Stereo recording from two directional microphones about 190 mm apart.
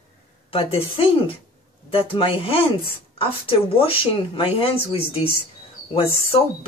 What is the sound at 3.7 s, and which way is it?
Speech, 30° left (ahead or behind).